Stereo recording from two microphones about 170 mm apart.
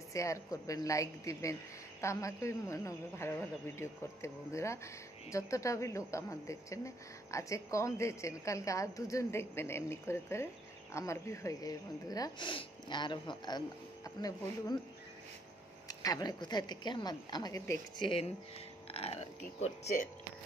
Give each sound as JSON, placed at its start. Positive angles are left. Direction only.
{"t": 0.1, "sound": "a woman's voice", "side_deg": 20}
{"t": 15.9, "sound": "a woman's voice", "side_deg": 20}
{"t": 18.0, "sound": "speech", "side_deg": 30}